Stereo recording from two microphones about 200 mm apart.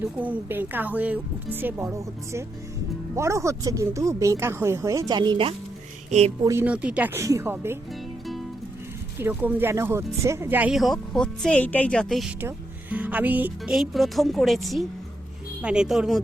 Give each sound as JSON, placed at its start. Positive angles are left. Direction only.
{"t": 0.0, "sound": "speech", "side_deg": -10}
{"t": 6.4, "sound": "speech", "side_deg": -15}
{"t": 9.1, "sound": "speech", "side_deg": -10}